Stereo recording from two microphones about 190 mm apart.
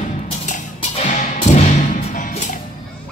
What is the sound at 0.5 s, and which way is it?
Music, 35° left (ahead or behind).